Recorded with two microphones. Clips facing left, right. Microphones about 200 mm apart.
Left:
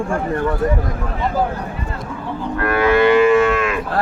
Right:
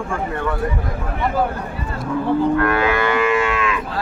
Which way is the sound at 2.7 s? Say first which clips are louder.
Left 5 dB; 30° left (ahead or behind).